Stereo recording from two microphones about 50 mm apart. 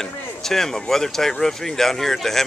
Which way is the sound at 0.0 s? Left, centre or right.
Centre.